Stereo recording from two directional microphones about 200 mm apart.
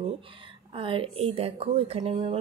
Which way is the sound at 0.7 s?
25° right (ahead or behind).